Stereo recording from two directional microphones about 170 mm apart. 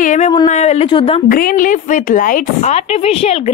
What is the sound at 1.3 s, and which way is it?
Speech, 55° left (ahead or behind).